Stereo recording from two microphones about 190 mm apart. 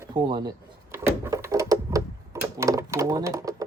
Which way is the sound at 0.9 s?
15° right (ahead or behind).